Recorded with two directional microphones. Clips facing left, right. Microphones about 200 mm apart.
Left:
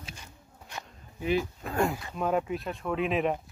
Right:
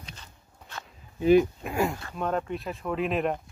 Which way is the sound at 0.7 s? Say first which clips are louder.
Even; 15° left (ahead or behind).